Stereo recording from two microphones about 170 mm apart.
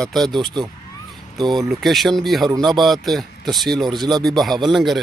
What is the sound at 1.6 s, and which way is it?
Speech, centre (ahead or behind).